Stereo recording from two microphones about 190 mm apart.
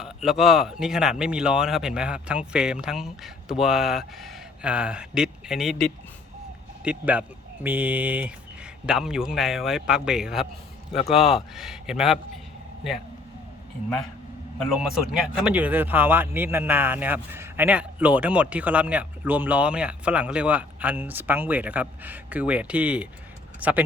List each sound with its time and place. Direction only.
0.0 s speech: centre (ahead or behind)
10.9 s a man's voice: 35° left (ahead or behind)
11.2 s speech: centre (ahead or behind)
14.8 s speech: 5° right (ahead or behind)